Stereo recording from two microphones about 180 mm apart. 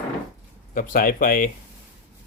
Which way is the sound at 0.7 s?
50° left (ahead or behind).